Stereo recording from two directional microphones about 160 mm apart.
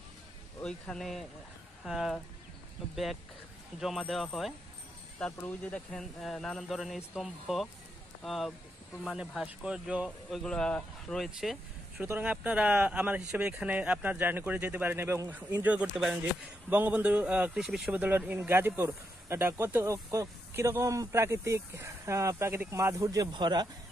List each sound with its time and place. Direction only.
0.6 s speech: 5° left (ahead or behind)
3.8 s speech: centre (ahead or behind); by 23.7 s 25° right (ahead or behind)